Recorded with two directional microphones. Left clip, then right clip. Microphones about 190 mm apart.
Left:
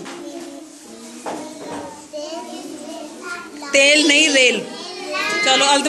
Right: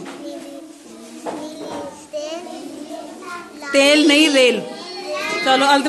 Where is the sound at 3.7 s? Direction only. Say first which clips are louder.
Even; 30° right (ahead or behind).